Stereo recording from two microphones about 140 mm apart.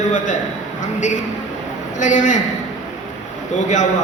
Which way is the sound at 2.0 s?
65° left (ahead or behind).